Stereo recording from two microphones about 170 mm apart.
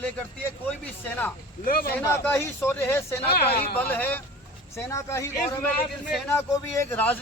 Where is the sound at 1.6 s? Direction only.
60° left (ahead or behind).